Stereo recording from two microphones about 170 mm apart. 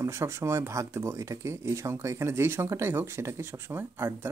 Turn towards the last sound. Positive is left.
turn(degrees=-15)  # may be behind; listen again after turning